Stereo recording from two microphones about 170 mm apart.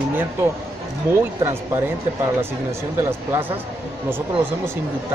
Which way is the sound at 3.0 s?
10° right (ahead or behind).